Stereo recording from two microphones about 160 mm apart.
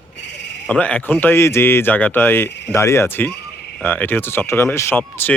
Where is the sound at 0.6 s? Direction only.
5° left (ahead or behind).